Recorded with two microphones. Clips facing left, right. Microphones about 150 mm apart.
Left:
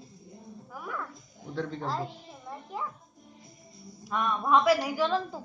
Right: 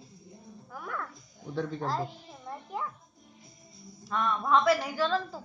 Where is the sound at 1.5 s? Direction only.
5° right (ahead or behind).